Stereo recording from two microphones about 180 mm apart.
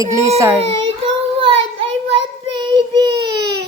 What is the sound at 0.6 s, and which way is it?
Child singing, 30° right (ahead or behind).